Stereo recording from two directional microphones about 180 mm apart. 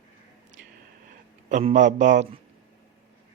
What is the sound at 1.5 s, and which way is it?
Speech, 40° right (ahead or behind).